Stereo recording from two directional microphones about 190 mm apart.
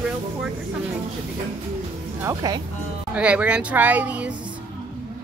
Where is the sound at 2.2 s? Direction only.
20° right (ahead or behind).